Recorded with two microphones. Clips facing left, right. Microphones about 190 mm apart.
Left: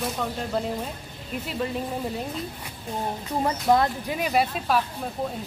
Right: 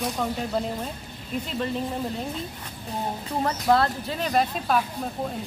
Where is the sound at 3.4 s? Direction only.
15° left (ahead or behind).